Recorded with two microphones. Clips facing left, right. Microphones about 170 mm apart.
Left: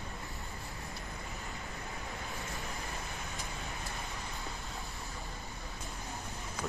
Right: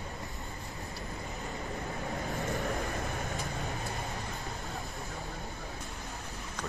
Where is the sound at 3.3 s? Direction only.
40° right (ahead or behind).